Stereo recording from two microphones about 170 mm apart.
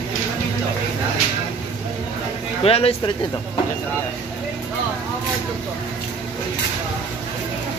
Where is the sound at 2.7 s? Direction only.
35° left (ahead or behind).